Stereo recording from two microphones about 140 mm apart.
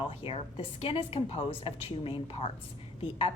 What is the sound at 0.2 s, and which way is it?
A woman's voice, 45° left (ahead or behind).